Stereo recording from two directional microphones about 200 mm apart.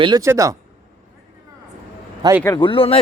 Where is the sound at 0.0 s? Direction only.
20° right (ahead or behind).